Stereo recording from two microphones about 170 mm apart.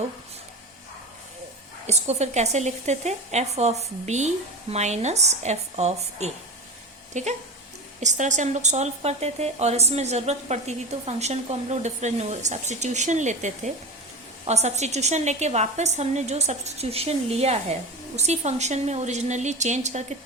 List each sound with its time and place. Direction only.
1.9 s a woman's voice: 40° right (ahead or behind)